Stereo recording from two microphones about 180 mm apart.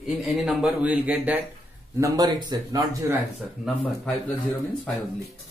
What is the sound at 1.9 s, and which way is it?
Speech, 20° right (ahead or behind).